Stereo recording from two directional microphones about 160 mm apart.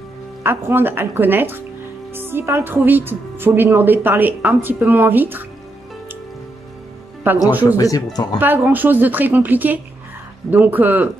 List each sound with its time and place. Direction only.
0.4 s a woman's voice: 15° right (ahead or behind)
7.3 s a woman's voice: 10° right (ahead or behind)
7.6 s speech: 20° left (ahead or behind)
8.4 s a woman's voice: 10° right (ahead or behind)